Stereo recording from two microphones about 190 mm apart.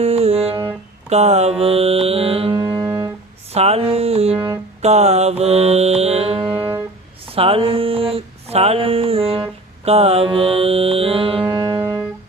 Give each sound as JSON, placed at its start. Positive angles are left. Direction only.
{"t": 0.0, "sound": "music", "side_deg": -30}
{"t": 2.6, "sound": "music", "side_deg": -15}
{"t": 3.5, "sound": "music", "side_deg": -35}
{"t": 7.3, "sound": "a sound", "side_deg": -30}